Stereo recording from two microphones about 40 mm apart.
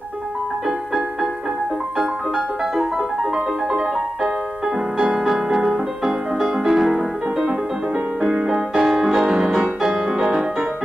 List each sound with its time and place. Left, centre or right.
0.7 s music: centre
5.1 s music: centre
8.2 s music: centre